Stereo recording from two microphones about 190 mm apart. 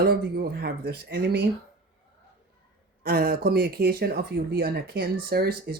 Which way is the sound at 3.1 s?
55° right (ahead or behind).